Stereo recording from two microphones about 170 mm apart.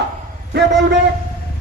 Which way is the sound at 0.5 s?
90° right.